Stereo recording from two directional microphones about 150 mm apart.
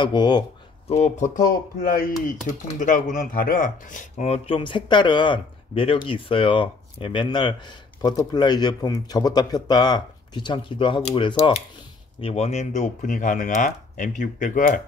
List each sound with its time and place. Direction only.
0.0 s speech: 30° left (ahead or behind)
0.8 s speech: 45° left (ahead or behind)
2.0 s speech: 65° left (ahead or behind)